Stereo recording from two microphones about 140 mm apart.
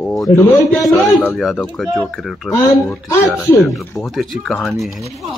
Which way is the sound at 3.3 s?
15° left (ahead or behind).